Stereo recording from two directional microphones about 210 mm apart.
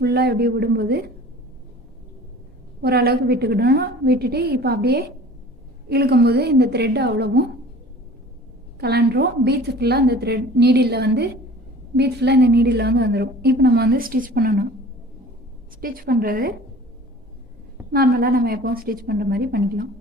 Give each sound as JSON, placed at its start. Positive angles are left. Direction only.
{"t": 0.0, "sound": "a woman's voice", "side_deg": -50}
{"t": 2.8, "sound": "a woman's voice", "side_deg": -45}
{"t": 8.8, "sound": "a woman's voice", "side_deg": -50}
{"t": 15.8, "sound": "a woman's voice", "side_deg": -45}
{"t": 17.9, "sound": "a woman's voice", "side_deg": -45}